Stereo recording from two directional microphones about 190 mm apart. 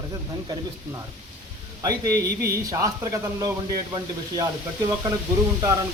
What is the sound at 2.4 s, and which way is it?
Speech, 15° right (ahead or behind).